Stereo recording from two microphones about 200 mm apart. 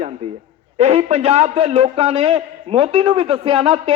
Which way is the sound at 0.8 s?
30° right (ahead or behind).